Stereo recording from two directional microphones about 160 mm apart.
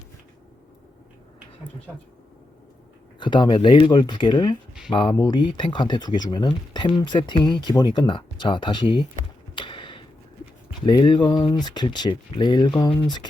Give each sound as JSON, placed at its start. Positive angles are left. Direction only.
{"t": 3.2, "sound": "speech", "side_deg": 30}
{"t": 9.6, "sound": "a sound", "side_deg": 30}
{"t": 10.8, "sound": "speech", "side_deg": 30}